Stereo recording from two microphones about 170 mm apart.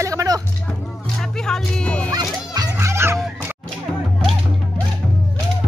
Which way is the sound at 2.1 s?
25° right (ahead or behind).